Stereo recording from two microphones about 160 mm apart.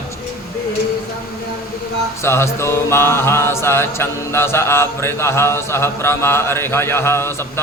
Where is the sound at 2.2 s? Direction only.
15° left (ahead or behind).